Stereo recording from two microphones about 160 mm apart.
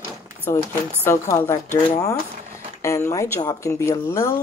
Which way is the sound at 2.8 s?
20° left (ahead or behind).